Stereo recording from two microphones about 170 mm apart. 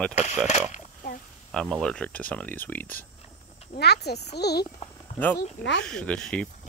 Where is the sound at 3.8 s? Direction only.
75° left (ahead or behind).